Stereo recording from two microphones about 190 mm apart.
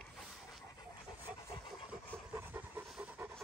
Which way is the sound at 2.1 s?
10° right (ahead or behind).